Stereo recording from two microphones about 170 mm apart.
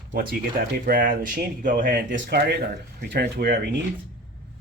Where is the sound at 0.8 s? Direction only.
55° right (ahead or behind).